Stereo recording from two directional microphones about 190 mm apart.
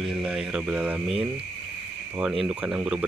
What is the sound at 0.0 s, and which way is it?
Speech, 5° right (ahead or behind).